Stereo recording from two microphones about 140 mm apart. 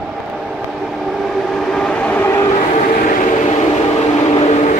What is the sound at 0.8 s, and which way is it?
Vehicle, centre (ahead or behind).